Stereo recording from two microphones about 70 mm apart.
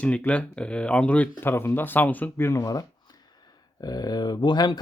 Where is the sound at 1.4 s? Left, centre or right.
Left.